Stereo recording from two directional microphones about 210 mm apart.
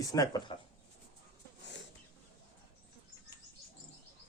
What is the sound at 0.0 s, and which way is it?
Speech, 15° left (ahead or behind).